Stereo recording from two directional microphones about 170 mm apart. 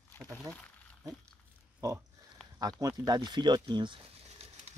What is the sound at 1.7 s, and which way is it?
Speech, 20° right (ahead or behind).